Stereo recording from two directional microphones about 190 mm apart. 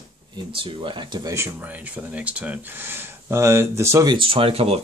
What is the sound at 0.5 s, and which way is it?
Speech, 25° right (ahead or behind).